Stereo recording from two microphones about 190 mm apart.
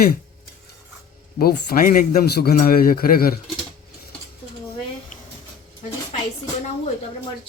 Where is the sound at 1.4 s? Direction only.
50° left (ahead or behind).